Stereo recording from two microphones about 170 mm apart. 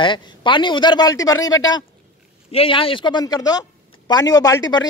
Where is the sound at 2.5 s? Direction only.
35° left (ahead or behind).